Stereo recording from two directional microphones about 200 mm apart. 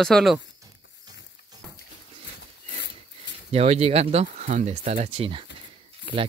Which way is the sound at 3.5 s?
30° right (ahead or behind).